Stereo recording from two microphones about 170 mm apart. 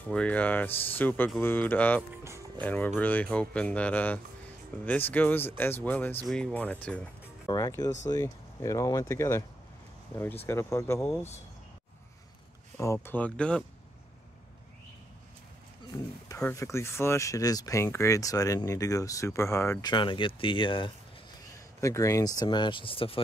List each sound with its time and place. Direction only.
0.0 s speech: 5° left (ahead or behind)
2.0 s speech: 15° right (ahead or behind)
2.6 s speech: 10° left (ahead or behind)
7.4 s speech: 20° left (ahead or behind)
10.4 s speech: 15° left (ahead or behind)
12.7 s speech: 15° left (ahead or behind)
16.3 s speech: 15° left (ahead or behind); by 20.9 s 30° left (ahead or behind)
21.8 s speech: 20° left (ahead or behind)